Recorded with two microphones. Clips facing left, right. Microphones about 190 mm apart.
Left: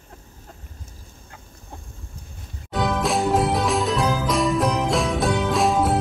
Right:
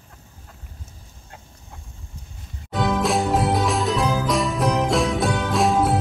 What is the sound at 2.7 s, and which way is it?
Music, centre (ahead or behind).